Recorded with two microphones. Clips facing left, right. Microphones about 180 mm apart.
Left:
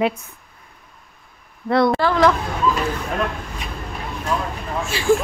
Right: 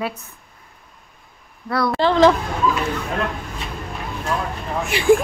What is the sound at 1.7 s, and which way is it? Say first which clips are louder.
Speech: left 5 dB; 25° left (ahead or behind).